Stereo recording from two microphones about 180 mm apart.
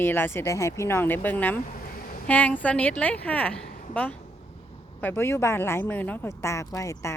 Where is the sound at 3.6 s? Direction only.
50° left (ahead or behind).